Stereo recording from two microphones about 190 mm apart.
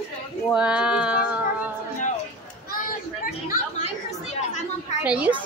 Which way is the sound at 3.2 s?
40° left (ahead or behind).